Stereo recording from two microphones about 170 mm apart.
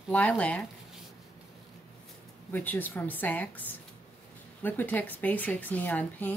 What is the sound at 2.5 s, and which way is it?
Speech, 10° left (ahead or behind).